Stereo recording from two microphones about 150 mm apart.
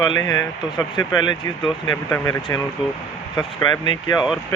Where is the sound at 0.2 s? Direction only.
25° left (ahead or behind).